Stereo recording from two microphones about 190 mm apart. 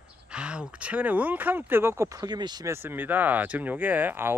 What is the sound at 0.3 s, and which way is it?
Speech, 5° right (ahead or behind).